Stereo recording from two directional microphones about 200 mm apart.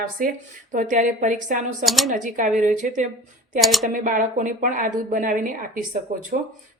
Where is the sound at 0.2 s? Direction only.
40° right (ahead or behind).